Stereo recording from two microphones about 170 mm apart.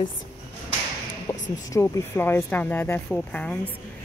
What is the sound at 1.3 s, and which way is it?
Speech, 20° left (ahead or behind).